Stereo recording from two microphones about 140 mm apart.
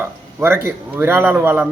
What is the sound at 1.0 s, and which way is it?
Speech, 15° right (ahead or behind).